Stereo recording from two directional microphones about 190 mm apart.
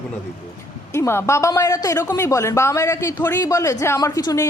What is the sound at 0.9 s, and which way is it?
Speech, 15° left (ahead or behind).